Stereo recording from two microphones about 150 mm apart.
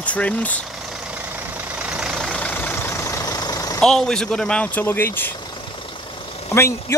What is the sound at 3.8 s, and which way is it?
Speech, 5° left (ahead or behind).